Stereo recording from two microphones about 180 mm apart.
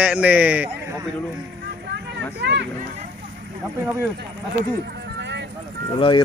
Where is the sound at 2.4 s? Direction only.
75° right (ahead or behind).